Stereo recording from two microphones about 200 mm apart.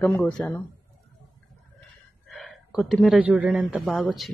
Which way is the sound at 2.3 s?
Centre (ahead or behind).